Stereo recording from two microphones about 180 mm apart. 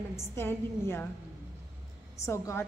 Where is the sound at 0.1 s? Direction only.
15° left (ahead or behind).